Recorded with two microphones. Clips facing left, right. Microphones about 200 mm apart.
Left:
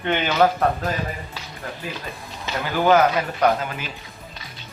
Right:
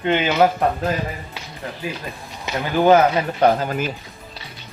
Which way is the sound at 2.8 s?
25° right (ahead or behind).